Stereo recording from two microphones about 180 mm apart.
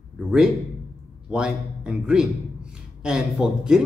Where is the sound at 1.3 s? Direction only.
5° right (ahead or behind).